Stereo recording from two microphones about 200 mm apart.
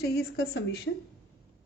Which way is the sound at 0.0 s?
55° left (ahead or behind).